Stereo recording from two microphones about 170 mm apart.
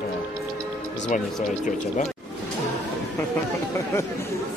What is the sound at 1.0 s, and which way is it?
Speech, 50° left (ahead or behind).